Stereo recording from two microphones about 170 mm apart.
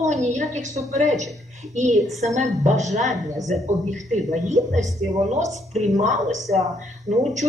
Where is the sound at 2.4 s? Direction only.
45° right (ahead or behind).